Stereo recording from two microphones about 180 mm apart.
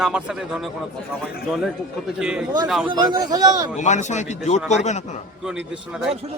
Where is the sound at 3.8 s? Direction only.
40° left (ahead or behind).